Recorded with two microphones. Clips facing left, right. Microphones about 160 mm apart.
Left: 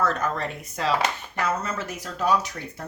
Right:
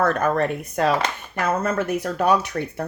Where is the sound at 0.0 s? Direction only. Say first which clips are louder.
Right 6 dB; 60° right (ahead or behind).